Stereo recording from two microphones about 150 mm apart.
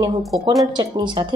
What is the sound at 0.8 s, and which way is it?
Speech, 30° right (ahead or behind).